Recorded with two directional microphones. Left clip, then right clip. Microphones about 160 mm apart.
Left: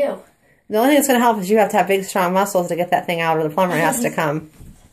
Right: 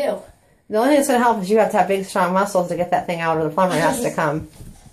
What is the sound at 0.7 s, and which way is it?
Speech, 25° left (ahead or behind).